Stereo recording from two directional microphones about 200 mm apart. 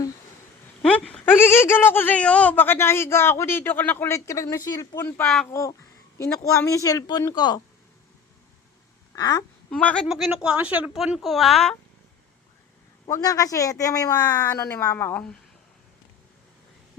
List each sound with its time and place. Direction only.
0.8 s speech: 5° left (ahead or behind)
9.1 s speech: 20° left (ahead or behind)
9.6 s a woman's voice: 5° left (ahead or behind)
13.1 s speech: 15° left (ahead or behind)